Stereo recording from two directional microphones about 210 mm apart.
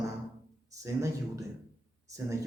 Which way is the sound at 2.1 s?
15° right (ahead or behind).